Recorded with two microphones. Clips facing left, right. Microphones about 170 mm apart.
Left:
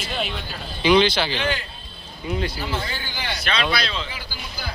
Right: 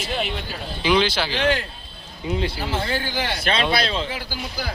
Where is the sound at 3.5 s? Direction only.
40° right (ahead or behind).